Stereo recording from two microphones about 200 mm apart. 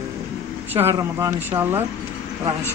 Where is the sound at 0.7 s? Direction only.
10° right (ahead or behind).